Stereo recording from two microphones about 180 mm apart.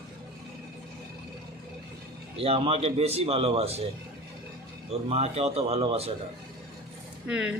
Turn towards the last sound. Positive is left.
turn(degrees=-5)  # may be behind; listen again after turning